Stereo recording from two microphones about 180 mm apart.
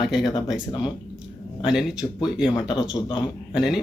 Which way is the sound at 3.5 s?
5° right (ahead or behind).